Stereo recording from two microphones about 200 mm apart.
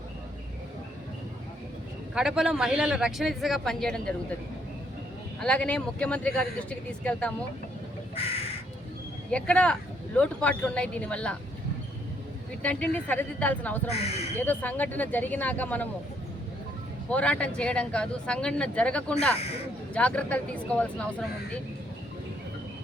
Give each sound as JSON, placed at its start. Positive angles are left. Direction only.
{"t": 2.1, "sound": "speech", "side_deg": -5}
{"t": 5.4, "sound": "speech", "side_deg": 5}
{"t": 8.1, "sound": "crow", "side_deg": 30}
{"t": 9.3, "sound": "speech", "side_deg": 5}
{"t": 12.6, "sound": "speech", "side_deg": 5}
{"t": 13.8, "sound": "speech", "side_deg": 30}
{"t": 14.4, "sound": "speech", "side_deg": 10}
{"t": 17.1, "sound": "speech", "side_deg": 5}